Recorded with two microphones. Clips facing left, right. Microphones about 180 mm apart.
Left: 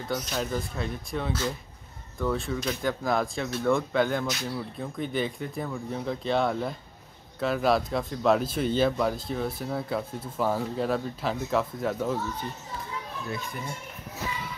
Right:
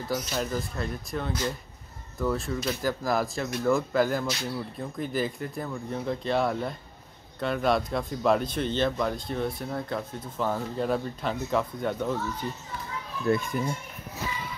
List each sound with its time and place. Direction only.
0.1 s speech: centre (ahead or behind)
13.3 s a child's voice: 55° right (ahead or behind)